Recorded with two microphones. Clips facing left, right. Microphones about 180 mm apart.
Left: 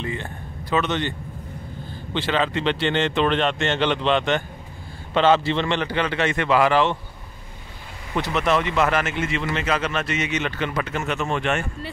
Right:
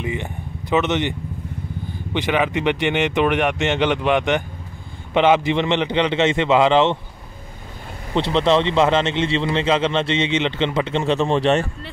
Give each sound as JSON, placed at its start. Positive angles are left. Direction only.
{"t": 0.0, "sound": "a sound", "side_deg": -15}
{"t": 1.9, "sound": "speech", "side_deg": -15}
{"t": 8.1, "sound": "speech", "side_deg": -25}